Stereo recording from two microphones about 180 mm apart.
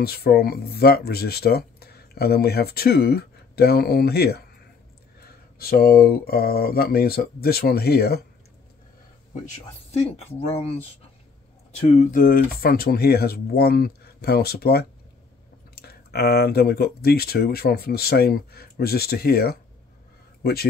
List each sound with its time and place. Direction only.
0.0 s speech: 60° left (ahead or behind)
9.8 s speech: 35° left (ahead or behind); by 19.6 s 60° left (ahead or behind)